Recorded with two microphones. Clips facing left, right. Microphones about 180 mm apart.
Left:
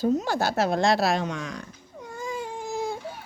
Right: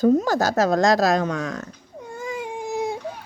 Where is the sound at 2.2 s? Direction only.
15° right (ahead or behind).